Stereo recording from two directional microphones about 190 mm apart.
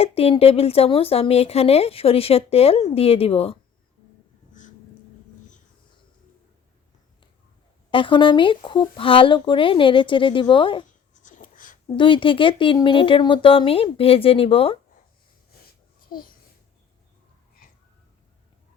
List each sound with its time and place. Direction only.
0.0 s a woman's voice: 30° left (ahead or behind)
7.9 s speech: 25° left (ahead or behind)
11.1 s a sound: 40° left (ahead or behind)
11.9 s speech: 25° left (ahead or behind)
16.0 s babbling: 50° left (ahead or behind)